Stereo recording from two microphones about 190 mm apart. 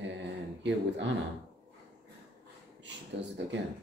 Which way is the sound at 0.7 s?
70° right (ahead or behind).